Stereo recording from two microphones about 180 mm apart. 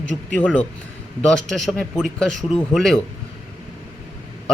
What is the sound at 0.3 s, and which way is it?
A man's voice, 5° left (ahead or behind).